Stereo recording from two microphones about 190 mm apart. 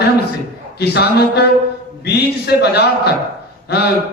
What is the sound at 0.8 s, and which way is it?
Speech, 60° left (ahead or behind).